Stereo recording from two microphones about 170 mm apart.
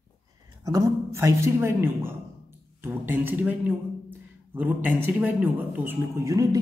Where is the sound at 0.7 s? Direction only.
20° right (ahead or behind).